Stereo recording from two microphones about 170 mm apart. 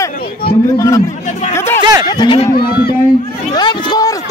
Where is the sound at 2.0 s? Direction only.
25° left (ahead or behind).